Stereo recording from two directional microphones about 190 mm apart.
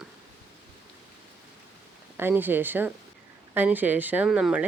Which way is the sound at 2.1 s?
10° right (ahead or behind).